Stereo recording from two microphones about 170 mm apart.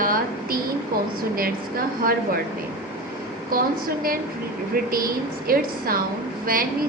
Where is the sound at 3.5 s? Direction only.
60° right (ahead or behind).